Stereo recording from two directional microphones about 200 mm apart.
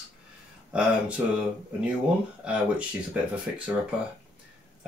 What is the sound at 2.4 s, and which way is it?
Speech, 5° right (ahead or behind).